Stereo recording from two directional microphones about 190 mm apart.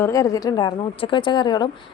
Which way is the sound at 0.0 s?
15° left (ahead or behind).